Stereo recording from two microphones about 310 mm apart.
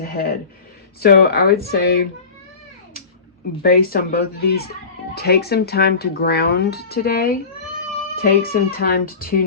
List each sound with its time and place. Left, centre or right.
0.0 s speech: left
3.6 s speech: left